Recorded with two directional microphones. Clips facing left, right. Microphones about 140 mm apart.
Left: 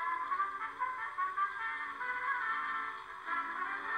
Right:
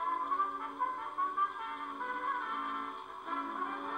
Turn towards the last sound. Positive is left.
turn(degrees=-15)  # may be behind; listen again after turning